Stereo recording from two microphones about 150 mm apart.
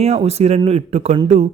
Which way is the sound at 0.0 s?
45° right (ahead or behind).